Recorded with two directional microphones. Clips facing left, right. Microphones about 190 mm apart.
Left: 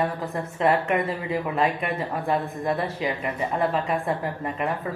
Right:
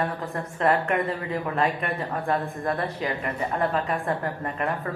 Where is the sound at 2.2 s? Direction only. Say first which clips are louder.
Left 1 dB; 10° left (ahead or behind).